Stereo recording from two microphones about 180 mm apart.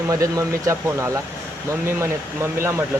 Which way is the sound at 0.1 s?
20° right (ahead or behind).